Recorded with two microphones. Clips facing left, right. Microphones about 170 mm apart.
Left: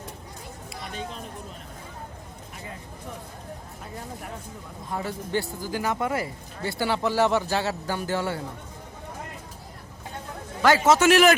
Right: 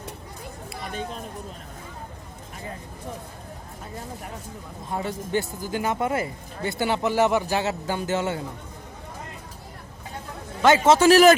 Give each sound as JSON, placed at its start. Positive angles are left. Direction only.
{"t": 0.7, "sound": "chatter", "side_deg": -50}
{"t": 4.9, "sound": "speech", "side_deg": -25}
{"t": 10.6, "sound": "a man's voice", "side_deg": -25}